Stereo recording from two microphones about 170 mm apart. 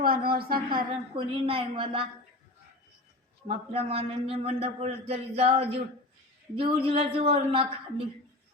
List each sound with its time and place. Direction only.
0.0 s speech: 60° right (ahead or behind)
1.1 s a man's voice: 30° right (ahead or behind)
3.4 s a man's voice: 35° right (ahead or behind)